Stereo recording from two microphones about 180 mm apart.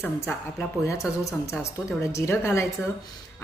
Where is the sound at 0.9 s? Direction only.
15° left (ahead or behind).